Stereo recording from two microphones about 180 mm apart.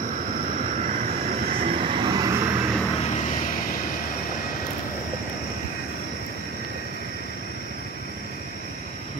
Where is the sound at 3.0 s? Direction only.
40° left (ahead or behind).